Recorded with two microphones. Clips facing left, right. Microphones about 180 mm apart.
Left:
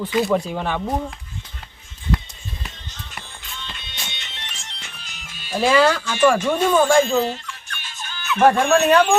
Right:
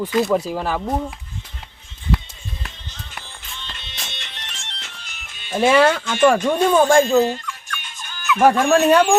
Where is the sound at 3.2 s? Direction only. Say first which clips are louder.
Left 2 dB; centre (ahead or behind).